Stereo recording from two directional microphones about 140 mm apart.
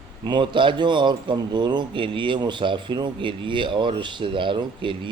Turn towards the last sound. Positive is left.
turn(degrees=-35)  # may be behind; listen again after turning